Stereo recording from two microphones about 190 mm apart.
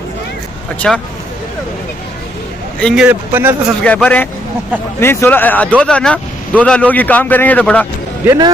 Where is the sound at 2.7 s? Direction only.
5° left (ahead or behind).